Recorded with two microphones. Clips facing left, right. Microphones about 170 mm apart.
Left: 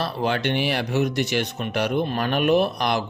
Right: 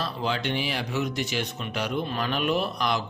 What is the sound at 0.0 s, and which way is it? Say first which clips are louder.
Speech: left 5 dB; 60° left (ahead or behind).